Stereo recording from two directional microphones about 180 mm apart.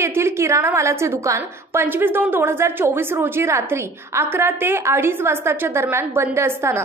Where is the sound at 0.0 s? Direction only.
15° right (ahead or behind).